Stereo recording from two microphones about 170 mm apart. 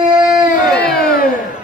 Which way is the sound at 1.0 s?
60° left (ahead or behind).